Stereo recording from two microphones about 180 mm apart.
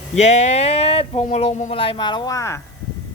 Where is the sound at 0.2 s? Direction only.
40° left (ahead or behind); by 2.6 s 15° left (ahead or behind).